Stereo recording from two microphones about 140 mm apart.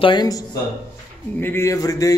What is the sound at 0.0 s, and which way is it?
A man's voice, 30° left (ahead or behind).